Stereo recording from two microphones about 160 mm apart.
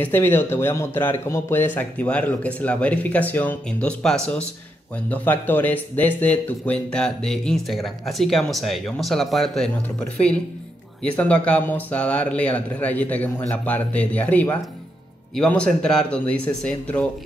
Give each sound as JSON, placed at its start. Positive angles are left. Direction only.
{"t": 0.0, "sound": "speech", "side_deg": 15}
{"t": 11.0, "sound": "speech", "side_deg": 10}